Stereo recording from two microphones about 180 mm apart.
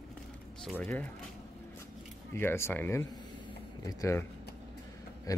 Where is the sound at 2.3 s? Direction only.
15° left (ahead or behind).